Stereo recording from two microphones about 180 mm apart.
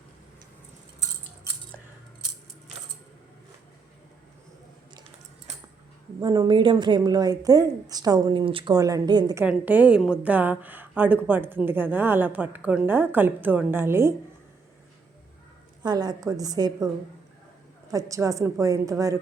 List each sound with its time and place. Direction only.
4.9 s a sound: 30° right (ahead or behind)
6.1 s a woman's voice: 20° right (ahead or behind)
9.4 s speech: 10° right (ahead or behind)
15.8 s a woman's voice: 25° right (ahead or behind)
17.9 s speech: 20° right (ahead or behind)